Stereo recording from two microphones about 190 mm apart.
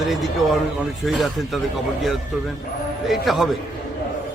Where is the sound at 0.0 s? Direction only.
Centre (ahead or behind).